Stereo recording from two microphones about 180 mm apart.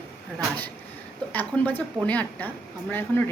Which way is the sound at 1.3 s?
10° left (ahead or behind).